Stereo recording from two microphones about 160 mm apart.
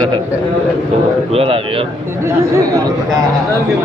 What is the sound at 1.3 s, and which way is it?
Speech, 35° right (ahead or behind).